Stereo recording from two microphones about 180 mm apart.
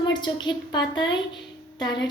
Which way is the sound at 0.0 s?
25° left (ahead or behind).